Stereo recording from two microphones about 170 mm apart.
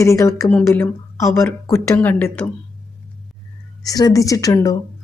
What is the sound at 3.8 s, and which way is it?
Speech, 20° left (ahead or behind).